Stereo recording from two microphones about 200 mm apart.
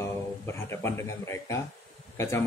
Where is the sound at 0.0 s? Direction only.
10° left (ahead or behind).